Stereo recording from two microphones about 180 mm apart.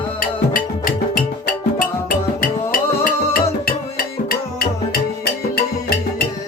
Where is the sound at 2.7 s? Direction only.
55° left (ahead or behind).